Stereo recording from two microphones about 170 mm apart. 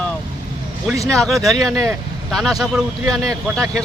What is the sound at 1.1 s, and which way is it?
Speech, centre (ahead or behind).